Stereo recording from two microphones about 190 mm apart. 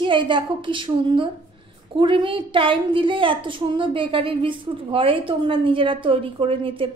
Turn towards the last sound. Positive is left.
turn(degrees=-30)  # may be behind; listen again after turning